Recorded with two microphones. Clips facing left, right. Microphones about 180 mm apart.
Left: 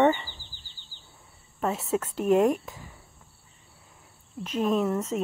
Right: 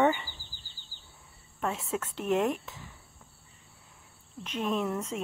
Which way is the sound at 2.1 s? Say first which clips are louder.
Left 6 dB; 45° left (ahead or behind).